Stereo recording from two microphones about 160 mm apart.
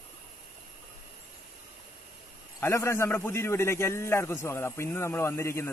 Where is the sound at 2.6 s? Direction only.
15° left (ahead or behind).